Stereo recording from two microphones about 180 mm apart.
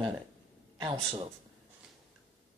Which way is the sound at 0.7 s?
30° right (ahead or behind).